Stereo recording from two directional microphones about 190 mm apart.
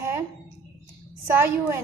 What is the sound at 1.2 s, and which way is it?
Speech, 10° right (ahead or behind).